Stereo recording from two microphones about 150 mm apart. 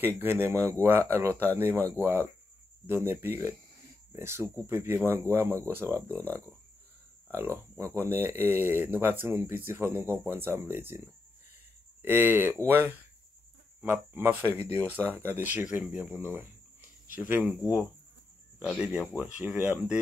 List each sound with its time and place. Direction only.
0.0 s speech: 15° right (ahead or behind)
6.1 s speech: 10° left (ahead or behind)
7.3 s speech: 15° right (ahead or behind)
13.7 s speech: 5° right (ahead or behind)
18.7 s speech: 5° right (ahead or behind)